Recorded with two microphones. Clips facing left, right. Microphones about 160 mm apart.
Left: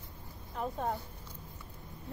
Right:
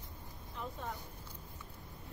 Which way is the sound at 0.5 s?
45° left (ahead or behind).